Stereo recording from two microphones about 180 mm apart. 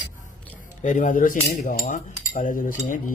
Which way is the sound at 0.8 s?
45° left (ahead or behind).